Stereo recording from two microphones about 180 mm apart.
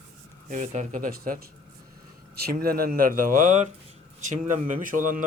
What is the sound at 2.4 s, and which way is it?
Speech, 60° right (ahead or behind).